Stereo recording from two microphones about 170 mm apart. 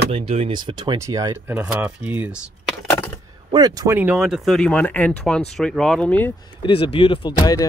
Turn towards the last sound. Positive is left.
turn(degrees=20)  # may be behind; listen again after turning